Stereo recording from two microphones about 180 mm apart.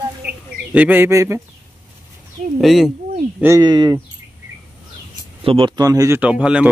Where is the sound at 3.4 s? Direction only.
20° right (ahead or behind).